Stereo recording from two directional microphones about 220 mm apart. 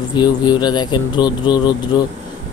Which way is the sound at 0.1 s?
20° left (ahead or behind).